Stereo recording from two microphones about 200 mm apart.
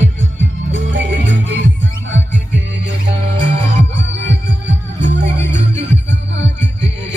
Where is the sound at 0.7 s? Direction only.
65° right (ahead or behind).